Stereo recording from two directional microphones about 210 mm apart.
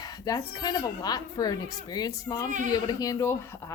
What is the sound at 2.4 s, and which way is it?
Speech, 40° right (ahead or behind).